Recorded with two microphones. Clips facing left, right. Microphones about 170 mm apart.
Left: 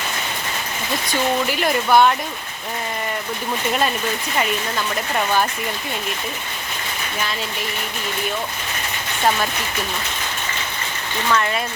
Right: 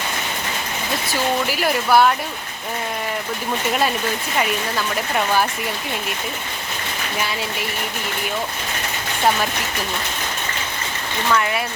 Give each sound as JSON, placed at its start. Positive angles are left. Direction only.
{"t": 1.0, "sound": "speech", "side_deg": -5}
{"t": 11.3, "sound": "speech", "side_deg": -10}